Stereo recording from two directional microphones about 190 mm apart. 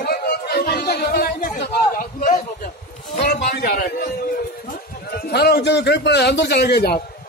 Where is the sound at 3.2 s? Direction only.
55° left (ahead or behind).